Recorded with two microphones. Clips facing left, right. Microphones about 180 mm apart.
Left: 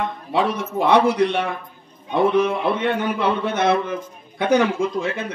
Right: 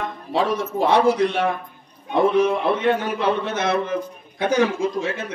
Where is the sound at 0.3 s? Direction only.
60° left (ahead or behind).